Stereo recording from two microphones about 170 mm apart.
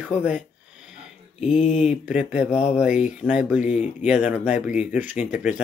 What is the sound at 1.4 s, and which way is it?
Speech, 45° left (ahead or behind).